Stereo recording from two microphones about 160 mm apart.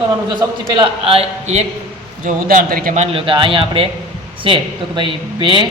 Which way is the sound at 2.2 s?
60° right (ahead or behind).